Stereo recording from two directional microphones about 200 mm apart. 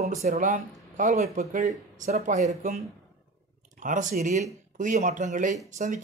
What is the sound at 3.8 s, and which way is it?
Speech, 40° right (ahead or behind).